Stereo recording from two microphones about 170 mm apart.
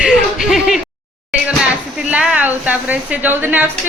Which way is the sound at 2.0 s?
5° right (ahead or behind).